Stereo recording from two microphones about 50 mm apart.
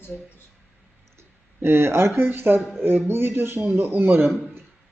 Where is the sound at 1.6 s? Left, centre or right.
Right.